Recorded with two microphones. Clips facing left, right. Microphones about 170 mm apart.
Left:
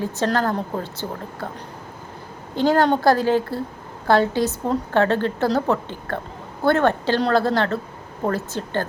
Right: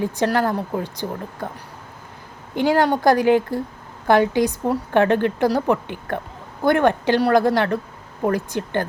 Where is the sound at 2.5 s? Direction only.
15° right (ahead or behind).